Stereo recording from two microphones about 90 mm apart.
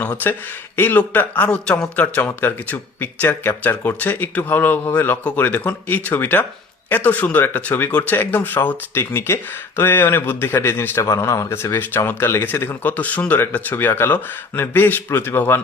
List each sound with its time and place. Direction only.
0.8 s speech: 20° left (ahead or behind)
3.2 s speech: 30° left (ahead or behind)